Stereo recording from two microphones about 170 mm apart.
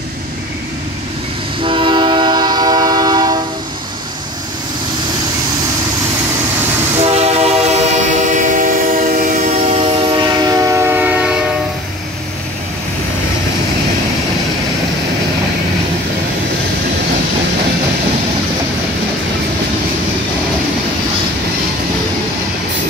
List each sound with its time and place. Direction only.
1.6 s train: 30° right (ahead or behind)
7.2 s train: 40° right (ahead or behind)
9.8 s train: 25° right (ahead or behind); by 11.4 s 5° right (ahead or behind)